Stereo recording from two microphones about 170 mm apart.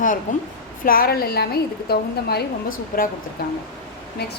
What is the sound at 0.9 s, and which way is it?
A woman's voice, 60° left (ahead or behind).